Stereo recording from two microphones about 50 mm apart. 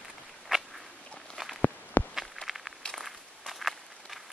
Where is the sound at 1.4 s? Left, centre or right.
Centre.